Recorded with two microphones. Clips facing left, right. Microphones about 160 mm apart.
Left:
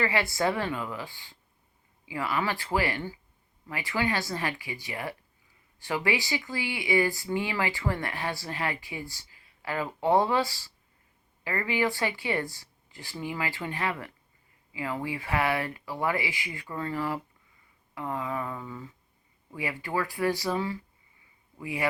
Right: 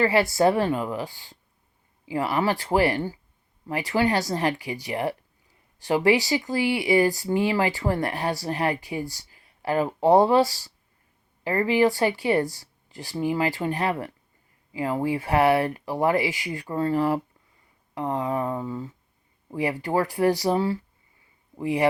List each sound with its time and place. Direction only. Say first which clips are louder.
0.0 s speech: right 7 dB; 40° right (ahead or behind)
5.9 s speech: right 8 dB; 35° right (ahead or behind)